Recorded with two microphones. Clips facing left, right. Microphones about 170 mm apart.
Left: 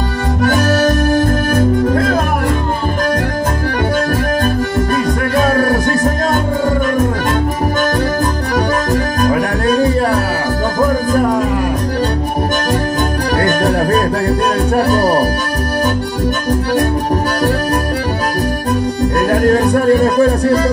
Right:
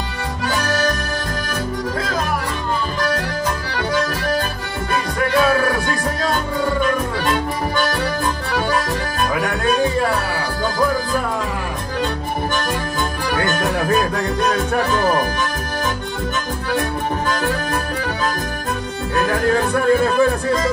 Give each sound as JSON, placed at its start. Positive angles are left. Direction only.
{"t": 0.4, "sound": "accordion", "side_deg": 50}
{"t": 4.9, "sound": "music", "side_deg": 45}
{"t": 9.2, "sound": "music", "side_deg": 40}
{"t": 13.4, "sound": "music", "side_deg": 40}
{"t": 19.1, "sound": "music", "side_deg": 40}